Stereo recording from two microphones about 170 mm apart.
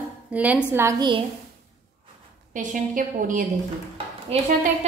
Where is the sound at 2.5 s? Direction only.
50° right (ahead or behind).